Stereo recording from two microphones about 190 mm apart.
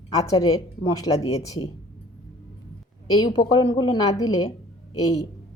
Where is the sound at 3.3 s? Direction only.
25° left (ahead or behind).